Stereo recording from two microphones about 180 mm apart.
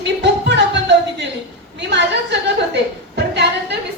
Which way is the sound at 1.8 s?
75° right (ahead or behind).